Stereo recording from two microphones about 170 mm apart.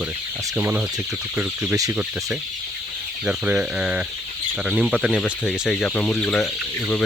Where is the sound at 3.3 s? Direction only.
5° right (ahead or behind).